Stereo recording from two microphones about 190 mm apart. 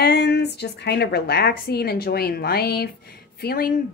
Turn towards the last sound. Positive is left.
turn(degrees=50)  # may be behind; listen again after turning